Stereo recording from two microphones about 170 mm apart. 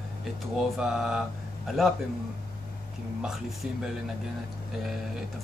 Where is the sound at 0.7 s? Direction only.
5° right (ahead or behind).